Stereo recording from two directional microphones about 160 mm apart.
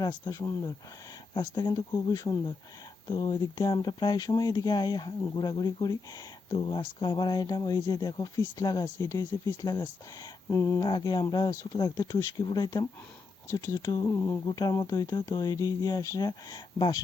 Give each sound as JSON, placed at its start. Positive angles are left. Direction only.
{"t": 0.1, "sound": "speech", "side_deg": 20}
{"t": 10.8, "sound": "speech", "side_deg": 25}